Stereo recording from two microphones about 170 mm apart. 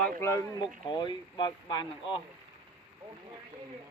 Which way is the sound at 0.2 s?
15° left (ahead or behind).